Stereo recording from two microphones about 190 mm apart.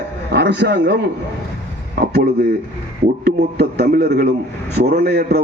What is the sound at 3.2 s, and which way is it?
A man's voice, 60° right (ahead or behind).